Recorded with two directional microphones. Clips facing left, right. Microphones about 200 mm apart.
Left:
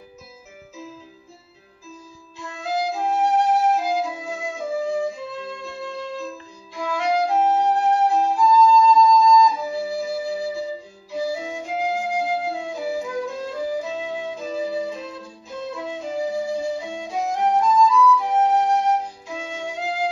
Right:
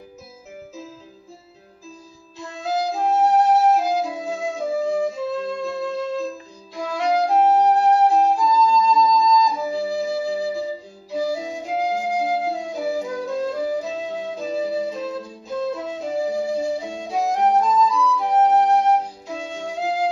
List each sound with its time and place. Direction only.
2.3 s flute: 40° right (ahead or behind)
5.7 s music: 40° right (ahead or behind)
7.2 s flute: 40° right (ahead or behind)
9.0 s music: 20° right (ahead or behind)
9.5 s flute: 40° right (ahead or behind)
15.7 s music: 40° right (ahead or behind)